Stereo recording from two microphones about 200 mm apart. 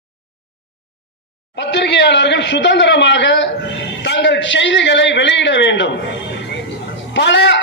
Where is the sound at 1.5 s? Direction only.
60° left (ahead or behind).